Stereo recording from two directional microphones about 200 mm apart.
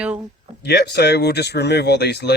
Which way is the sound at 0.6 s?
55° left (ahead or behind).